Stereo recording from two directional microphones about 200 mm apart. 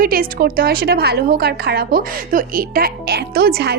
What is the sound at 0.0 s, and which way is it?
A woman's voice, 45° right (ahead or behind).